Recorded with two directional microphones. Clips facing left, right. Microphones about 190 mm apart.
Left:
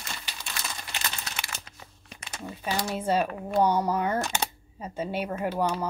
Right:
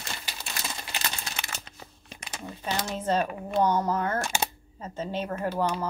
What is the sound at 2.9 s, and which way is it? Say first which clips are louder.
Speech: left 1 dB; 10° left (ahead or behind).